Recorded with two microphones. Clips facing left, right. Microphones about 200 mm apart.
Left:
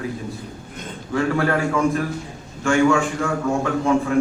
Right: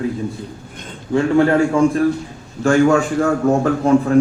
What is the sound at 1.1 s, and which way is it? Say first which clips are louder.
Speech: right 6 dB; 25° right (ahead or behind).